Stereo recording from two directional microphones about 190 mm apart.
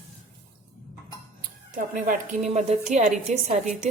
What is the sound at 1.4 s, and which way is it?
A woman's voice, 45° right (ahead or behind).